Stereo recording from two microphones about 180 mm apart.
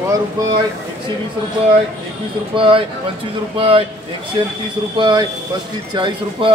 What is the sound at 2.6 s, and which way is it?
Speech, 30° right (ahead or behind).